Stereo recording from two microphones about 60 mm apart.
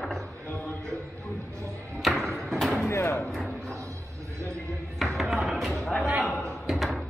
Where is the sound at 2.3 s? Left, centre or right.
Centre.